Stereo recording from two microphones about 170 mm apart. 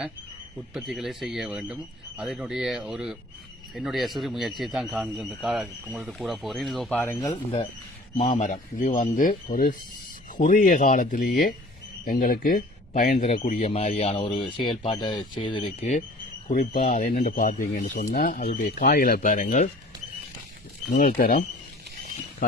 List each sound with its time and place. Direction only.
0.7 s speech: centre (ahead or behind)
7.0 s speech: 15° left (ahead or behind)
8.2 s speech: 45° left (ahead or behind); by 15.9 s 30° left (ahead or behind)
16.5 s speech: 50° left (ahead or behind)
20.9 s speech: 60° left (ahead or behind)